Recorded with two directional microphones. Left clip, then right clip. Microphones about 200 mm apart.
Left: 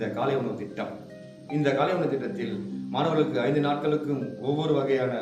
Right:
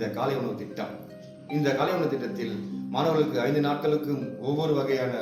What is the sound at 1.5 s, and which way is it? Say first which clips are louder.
Speech: left 1 dB; 5° left (ahead or behind).